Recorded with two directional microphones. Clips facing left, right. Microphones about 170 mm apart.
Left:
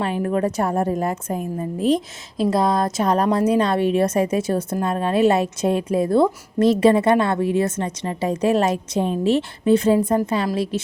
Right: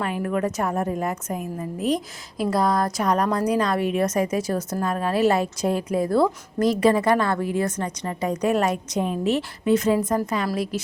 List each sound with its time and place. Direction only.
0.0 s a woman's voice: 30° left (ahead or behind)